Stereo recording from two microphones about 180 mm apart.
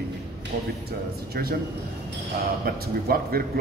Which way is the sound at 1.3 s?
60° right (ahead or behind).